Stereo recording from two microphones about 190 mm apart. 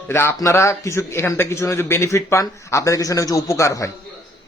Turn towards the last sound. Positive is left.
turn(degrees=15)  # may be behind; listen again after turning